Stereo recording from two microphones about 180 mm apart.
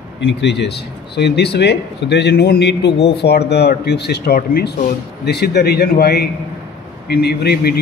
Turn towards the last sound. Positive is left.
turn(degrees=60)  # may be behind; listen again after turning